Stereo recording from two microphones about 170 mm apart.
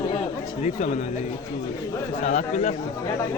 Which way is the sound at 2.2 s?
45° left (ahead or behind).